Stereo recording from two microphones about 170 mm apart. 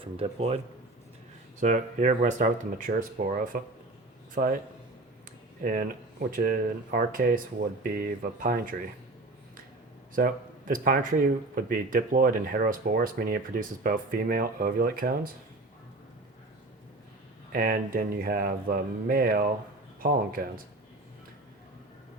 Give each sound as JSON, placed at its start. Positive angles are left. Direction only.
{"t": 0.0, "sound": "speech", "side_deg": -35}
{"t": 1.6, "sound": "speech", "side_deg": -45}
{"t": 4.4, "sound": "speech", "side_deg": -50}
{"t": 5.6, "sound": "speech", "side_deg": -55}
{"t": 10.2, "sound": "speech", "side_deg": -55}
{"t": 17.5, "sound": "speech", "side_deg": -60}